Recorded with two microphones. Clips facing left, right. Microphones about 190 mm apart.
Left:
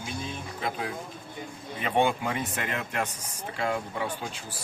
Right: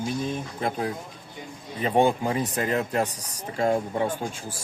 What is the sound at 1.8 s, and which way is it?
Speech, 40° right (ahead or behind).